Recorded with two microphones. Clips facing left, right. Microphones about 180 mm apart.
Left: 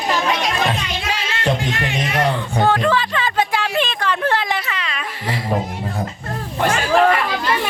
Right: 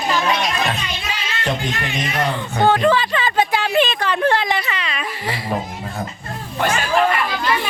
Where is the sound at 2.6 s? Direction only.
Centre (ahead or behind).